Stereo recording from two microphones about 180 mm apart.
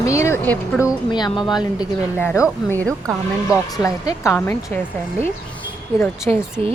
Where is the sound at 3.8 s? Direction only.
20° left (ahead or behind).